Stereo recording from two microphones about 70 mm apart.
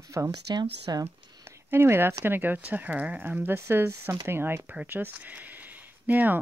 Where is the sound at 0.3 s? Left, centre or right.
Right.